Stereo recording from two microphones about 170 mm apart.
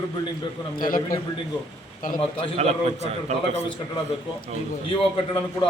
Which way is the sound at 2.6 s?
40° right (ahead or behind).